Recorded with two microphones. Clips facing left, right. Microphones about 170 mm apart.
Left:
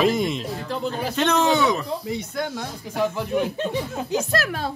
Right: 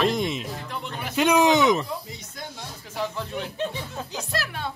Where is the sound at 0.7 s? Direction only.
35° left (ahead or behind).